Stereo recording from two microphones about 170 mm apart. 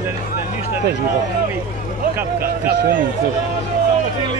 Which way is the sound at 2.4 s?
60° right (ahead or behind).